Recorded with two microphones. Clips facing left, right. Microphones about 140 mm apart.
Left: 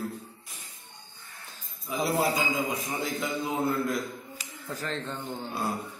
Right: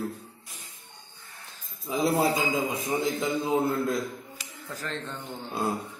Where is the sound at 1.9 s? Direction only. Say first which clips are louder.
Right 3 dB; 25° right (ahead or behind).